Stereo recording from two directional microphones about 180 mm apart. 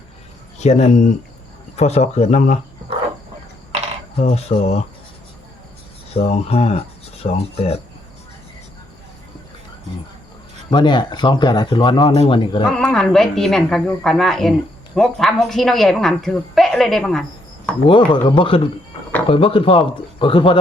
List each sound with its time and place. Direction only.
0.6 s speech: 40° left (ahead or behind)
4.2 s speech: 35° left (ahead or behind)
6.1 s speech: 35° left (ahead or behind)
10.7 s speech: 25° left (ahead or behind)
12.7 s speech: 5° left (ahead or behind)
17.8 s speech: 25° left (ahead or behind)